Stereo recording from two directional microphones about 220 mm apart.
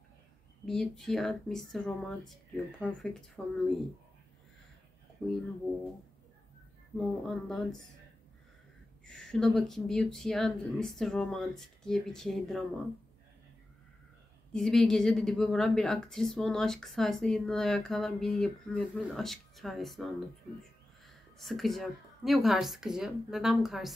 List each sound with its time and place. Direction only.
0.7 s a woman's voice: centre (ahead or behind)
5.2 s a woman's voice: 5° left (ahead or behind)
7.0 s a woman's voice: centre (ahead or behind)
9.0 s a woman's voice: 5° left (ahead or behind)
14.5 s a woman's voice: centre (ahead or behind)
21.4 s a woman's voice: centre (ahead or behind)